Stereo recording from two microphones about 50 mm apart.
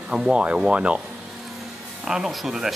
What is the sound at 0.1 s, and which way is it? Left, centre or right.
Speech, centre.